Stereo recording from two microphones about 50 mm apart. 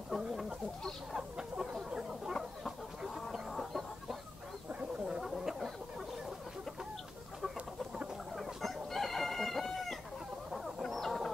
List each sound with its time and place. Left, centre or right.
0.1 s chicken: centre
1.9 s a sound: centre
3.0 s chicken: centre
4.7 s a sound: right
5.2 s chicken: centre
8.4 s chicken: centre